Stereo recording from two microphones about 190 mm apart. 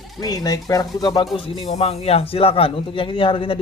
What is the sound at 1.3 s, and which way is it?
Speech, 35° left (ahead or behind).